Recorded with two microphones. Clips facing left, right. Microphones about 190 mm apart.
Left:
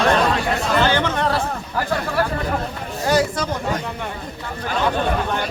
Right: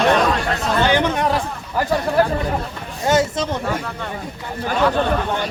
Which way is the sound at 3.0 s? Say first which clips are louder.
Right 1 dB; 25° right (ahead or behind).